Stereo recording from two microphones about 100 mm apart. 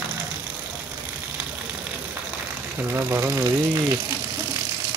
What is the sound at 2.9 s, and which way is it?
Speech, 25° right (ahead or behind).